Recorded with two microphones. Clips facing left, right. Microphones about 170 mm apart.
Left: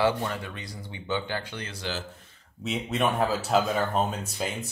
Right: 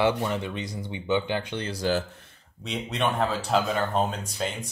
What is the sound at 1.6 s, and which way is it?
Speech, 40° right (ahead or behind).